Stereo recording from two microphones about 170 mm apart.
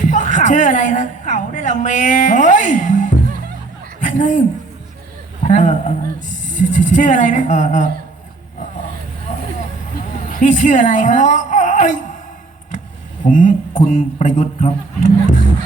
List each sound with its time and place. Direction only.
0.1 s a woman's voice: 45° left (ahead or behind)
9.3 s vehicle: 45° left (ahead or behind)
10.4 s a woman's voice: 45° left (ahead or behind)
13.2 s a woman's voice: 45° left (ahead or behind)